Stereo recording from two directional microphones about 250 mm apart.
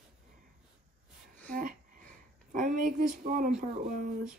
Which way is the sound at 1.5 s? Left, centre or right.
Right.